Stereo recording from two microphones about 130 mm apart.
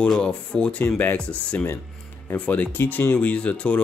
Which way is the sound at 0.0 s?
10° left (ahead or behind).